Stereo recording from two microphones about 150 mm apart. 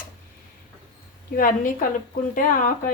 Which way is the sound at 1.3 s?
65° left (ahead or behind).